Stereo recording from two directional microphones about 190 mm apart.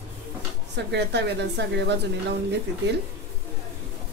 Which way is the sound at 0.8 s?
65° right (ahead or behind).